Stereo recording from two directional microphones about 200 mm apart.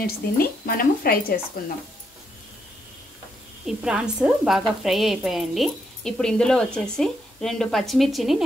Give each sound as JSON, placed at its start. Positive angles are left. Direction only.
{"t": 0.0, "sound": "speech", "side_deg": 45}
{"t": 3.6, "sound": "speech", "side_deg": -5}